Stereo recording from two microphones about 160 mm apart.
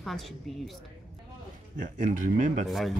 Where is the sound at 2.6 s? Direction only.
Centre (ahead or behind).